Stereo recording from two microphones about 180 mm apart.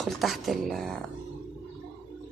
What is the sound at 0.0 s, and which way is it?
Speech, centre (ahead or behind).